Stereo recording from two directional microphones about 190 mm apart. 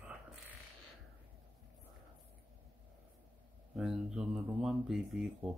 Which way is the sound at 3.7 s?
Centre (ahead or behind).